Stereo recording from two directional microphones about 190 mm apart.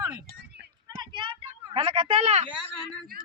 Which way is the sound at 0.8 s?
20° right (ahead or behind).